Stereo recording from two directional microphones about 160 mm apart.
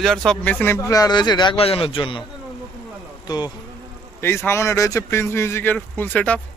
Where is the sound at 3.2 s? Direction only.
25° left (ahead or behind).